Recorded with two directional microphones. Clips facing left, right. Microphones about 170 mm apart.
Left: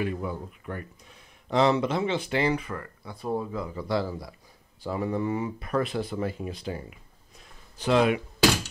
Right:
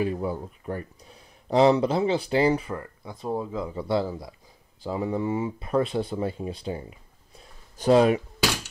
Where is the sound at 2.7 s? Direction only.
20° right (ahead or behind).